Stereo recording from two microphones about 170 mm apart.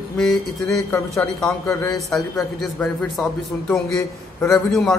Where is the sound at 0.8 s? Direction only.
15° left (ahead or behind).